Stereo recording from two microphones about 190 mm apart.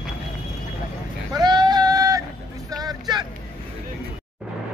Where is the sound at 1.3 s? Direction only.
20° right (ahead or behind).